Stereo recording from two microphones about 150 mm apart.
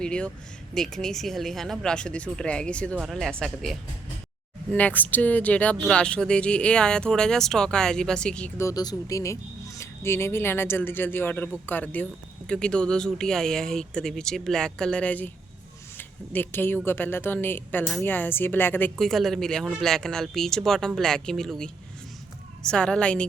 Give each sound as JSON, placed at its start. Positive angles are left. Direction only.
{"t": 0.0, "sound": "speech", "side_deg": 5}
{"t": 8.5, "sound": "speech", "side_deg": 20}
{"t": 18.9, "sound": "speech", "side_deg": 0}